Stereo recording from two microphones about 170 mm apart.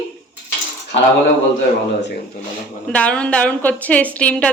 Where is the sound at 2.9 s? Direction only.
5° left (ahead or behind).